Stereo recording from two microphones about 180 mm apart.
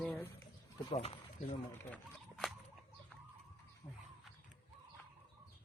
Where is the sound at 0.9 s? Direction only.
30° left (ahead or behind).